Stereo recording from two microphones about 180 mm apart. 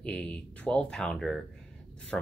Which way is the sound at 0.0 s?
5° left (ahead or behind).